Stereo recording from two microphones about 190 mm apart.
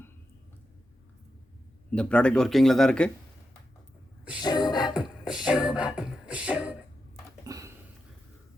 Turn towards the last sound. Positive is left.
turn(degrees=-20)  # may be behind; listen again after turning